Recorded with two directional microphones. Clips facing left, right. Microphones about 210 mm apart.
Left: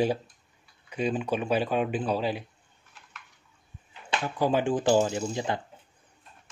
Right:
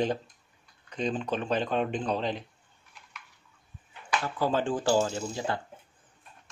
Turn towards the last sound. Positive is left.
turn(degrees=15)  # may be behind; listen again after turning